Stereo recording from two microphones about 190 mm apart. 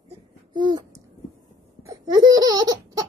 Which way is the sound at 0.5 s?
25° right (ahead or behind).